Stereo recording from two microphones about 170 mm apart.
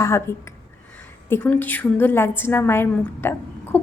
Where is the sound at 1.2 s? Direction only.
10° left (ahead or behind).